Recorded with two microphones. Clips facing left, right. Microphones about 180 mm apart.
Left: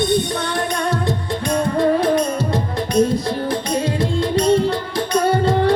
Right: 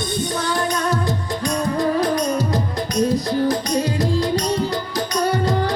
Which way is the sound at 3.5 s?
25° left (ahead or behind).